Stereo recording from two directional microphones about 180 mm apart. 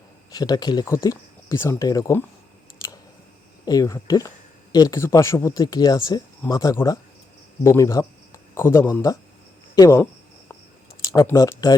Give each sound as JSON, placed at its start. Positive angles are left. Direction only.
{"t": 0.3, "sound": "speech", "side_deg": 20}
{"t": 3.7, "sound": "speech", "side_deg": 20}
{"t": 11.0, "sound": "speech", "side_deg": 20}